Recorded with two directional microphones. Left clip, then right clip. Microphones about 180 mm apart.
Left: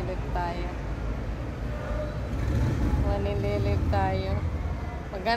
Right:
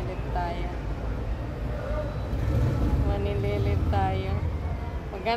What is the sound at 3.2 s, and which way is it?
Music, 25° left (ahead or behind).